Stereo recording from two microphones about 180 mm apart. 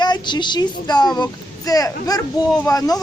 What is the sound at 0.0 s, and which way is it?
A woman's voice, 25° left (ahead or behind).